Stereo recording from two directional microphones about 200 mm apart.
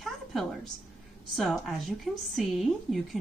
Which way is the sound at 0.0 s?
Centre (ahead or behind).